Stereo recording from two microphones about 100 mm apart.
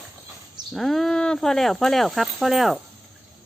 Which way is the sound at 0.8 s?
5° left (ahead or behind).